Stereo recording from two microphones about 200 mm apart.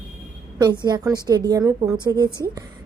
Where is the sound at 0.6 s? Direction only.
20° right (ahead or behind).